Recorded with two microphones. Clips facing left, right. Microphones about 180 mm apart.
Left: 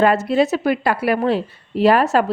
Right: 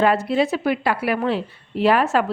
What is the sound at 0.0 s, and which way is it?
A woman's voice, 45° left (ahead or behind).